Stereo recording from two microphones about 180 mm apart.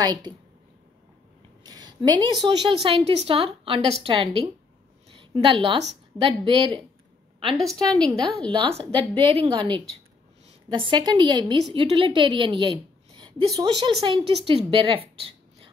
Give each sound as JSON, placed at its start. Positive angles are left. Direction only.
{"t": 0.0, "sound": "a woman's voice", "side_deg": -20}
{"t": 1.6, "sound": "a woman's voice", "side_deg": -20}
{"t": 7.5, "sound": "a woman's voice", "side_deg": 0}
{"t": 8.5, "sound": "a woman's voice", "side_deg": -30}